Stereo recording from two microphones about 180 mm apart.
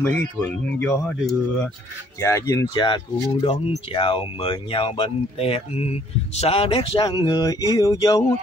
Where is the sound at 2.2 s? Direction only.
15° left (ahead or behind).